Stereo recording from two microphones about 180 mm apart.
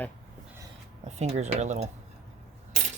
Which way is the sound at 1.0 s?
40° right (ahead or behind).